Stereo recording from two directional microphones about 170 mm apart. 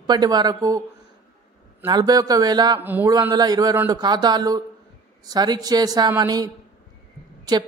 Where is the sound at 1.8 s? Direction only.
25° right (ahead or behind).